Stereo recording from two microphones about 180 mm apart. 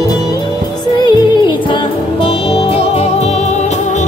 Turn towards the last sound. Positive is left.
turn(degrees=35)  # may be behind; listen again after turning